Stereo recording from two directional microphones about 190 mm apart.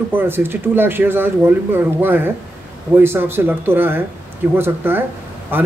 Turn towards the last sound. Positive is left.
turn(degrees=-10)  # may be behind; listen again after turning